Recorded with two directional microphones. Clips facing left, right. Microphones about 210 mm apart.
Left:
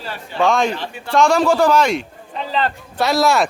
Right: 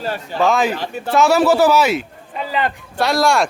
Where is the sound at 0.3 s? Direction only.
Centre (ahead or behind).